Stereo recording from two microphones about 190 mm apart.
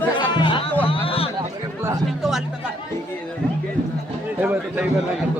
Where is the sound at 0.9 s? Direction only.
30° left (ahead or behind).